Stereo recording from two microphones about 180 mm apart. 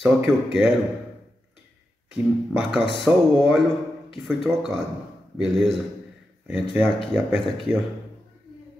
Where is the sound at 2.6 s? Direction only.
Centre (ahead or behind).